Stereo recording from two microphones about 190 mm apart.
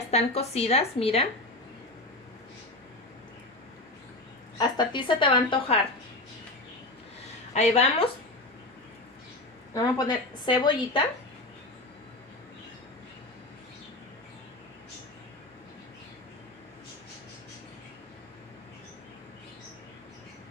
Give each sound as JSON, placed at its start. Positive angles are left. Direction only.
{"t": 0.1, "sound": "a woman's voice", "side_deg": 35}
{"t": 4.6, "sound": "a woman's voice", "side_deg": 25}
{"t": 7.5, "sound": "a woman's voice", "side_deg": 35}
{"t": 9.8, "sound": "a woman's voice", "side_deg": 20}